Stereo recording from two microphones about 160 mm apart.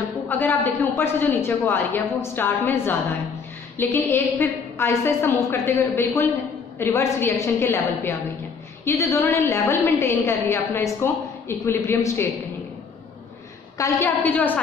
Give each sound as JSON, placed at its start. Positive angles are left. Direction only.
{"t": 0.3, "sound": "a woman's voice", "side_deg": 10}
{"t": 13.7, "sound": "a woman's voice", "side_deg": 20}